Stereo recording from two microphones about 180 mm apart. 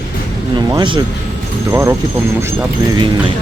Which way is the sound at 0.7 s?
25° right (ahead or behind).